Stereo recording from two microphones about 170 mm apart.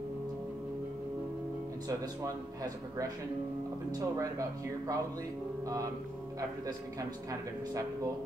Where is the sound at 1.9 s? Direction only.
20° right (ahead or behind).